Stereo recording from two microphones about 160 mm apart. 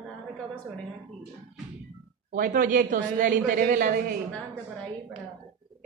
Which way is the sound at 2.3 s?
55° right (ahead or behind).